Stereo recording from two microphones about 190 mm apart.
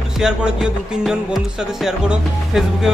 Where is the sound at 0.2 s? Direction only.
5° right (ahead or behind).